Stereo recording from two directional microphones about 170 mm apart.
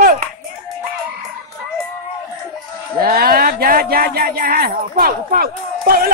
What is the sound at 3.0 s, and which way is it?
Speech, 60° right (ahead or behind).